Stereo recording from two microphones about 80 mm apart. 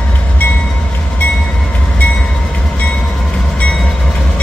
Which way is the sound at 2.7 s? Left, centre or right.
Centre.